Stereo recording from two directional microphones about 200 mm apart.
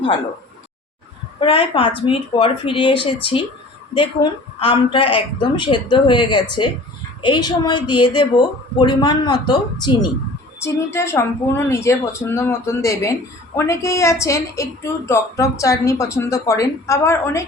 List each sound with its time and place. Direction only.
1.4 s a woman's voice: 25° left (ahead or behind)